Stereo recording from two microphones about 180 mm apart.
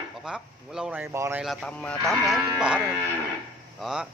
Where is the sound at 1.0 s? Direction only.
15° right (ahead or behind).